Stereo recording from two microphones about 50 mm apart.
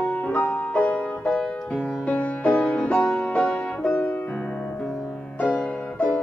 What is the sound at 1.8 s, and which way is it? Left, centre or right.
Music, left.